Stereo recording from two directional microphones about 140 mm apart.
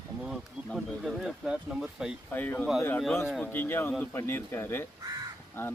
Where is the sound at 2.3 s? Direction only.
15° left (ahead or behind).